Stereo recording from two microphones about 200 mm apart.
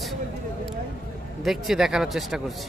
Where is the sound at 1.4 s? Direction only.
Centre (ahead or behind).